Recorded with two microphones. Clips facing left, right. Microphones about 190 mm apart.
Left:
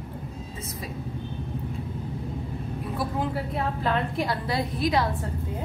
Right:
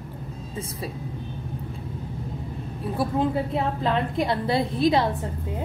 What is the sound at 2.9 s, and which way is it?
A woman's voice, 25° right (ahead or behind).